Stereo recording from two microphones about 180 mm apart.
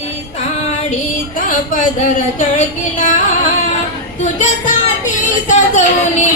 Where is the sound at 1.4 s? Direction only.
50° left (ahead or behind).